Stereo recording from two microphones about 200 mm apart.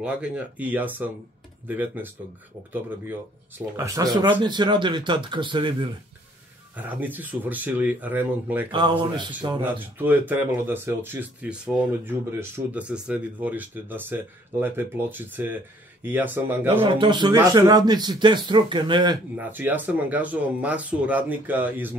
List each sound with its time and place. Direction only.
0.0 s speech: 5° right (ahead or behind); by 5.9 s 25° right (ahead or behind)
6.7 s speech: 10° right (ahead or behind)
8.7 s speech: 20° right (ahead or behind)
9.6 s speech: 10° right (ahead or behind)
16.8 s speech: 25° right (ahead or behind)
19.3 s speech: 10° right (ahead or behind)